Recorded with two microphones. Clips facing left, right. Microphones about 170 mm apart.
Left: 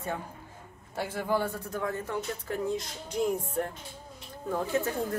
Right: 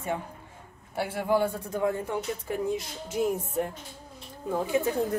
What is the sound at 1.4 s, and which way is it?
A woman's voice, 15° right (ahead or behind).